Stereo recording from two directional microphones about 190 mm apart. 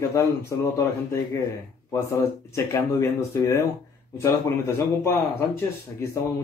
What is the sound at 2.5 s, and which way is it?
Speech, 15° left (ahead or behind).